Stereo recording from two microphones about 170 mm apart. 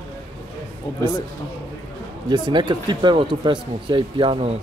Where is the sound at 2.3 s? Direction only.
25° right (ahead or behind).